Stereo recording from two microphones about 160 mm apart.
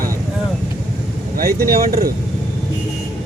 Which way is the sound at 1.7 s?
65° right (ahead or behind).